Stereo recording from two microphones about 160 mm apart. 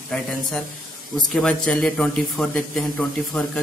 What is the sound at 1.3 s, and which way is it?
Speech, 5° left (ahead or behind).